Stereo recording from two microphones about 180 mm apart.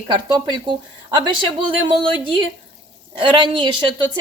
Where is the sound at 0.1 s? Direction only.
25° right (ahead or behind).